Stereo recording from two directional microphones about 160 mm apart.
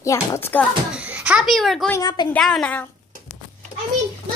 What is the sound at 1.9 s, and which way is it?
Speech, 25° left (ahead or behind).